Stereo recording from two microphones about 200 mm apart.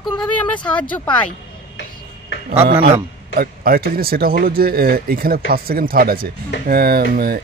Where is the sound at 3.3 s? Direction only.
50° right (ahead or behind).